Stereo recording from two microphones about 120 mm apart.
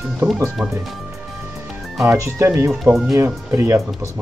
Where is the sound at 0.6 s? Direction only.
15° right (ahead or behind).